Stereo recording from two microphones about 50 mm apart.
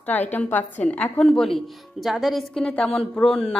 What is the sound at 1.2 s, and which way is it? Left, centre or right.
Speech, centre.